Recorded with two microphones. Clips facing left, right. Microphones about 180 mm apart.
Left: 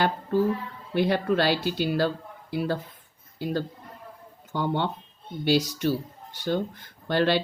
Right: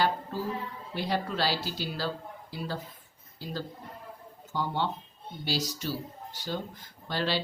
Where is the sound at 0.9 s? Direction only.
60° left (ahead or behind).